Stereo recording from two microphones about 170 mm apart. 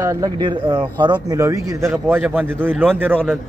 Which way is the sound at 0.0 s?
20° right (ahead or behind).